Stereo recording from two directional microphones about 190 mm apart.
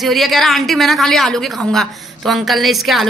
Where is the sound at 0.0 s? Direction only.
Centre (ahead or behind).